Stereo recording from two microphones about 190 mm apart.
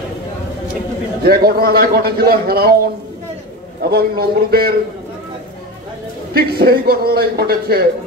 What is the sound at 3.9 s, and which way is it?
Speech, 55° right (ahead or behind).